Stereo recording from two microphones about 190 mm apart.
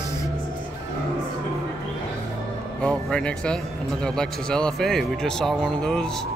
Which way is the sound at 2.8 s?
5° left (ahead or behind).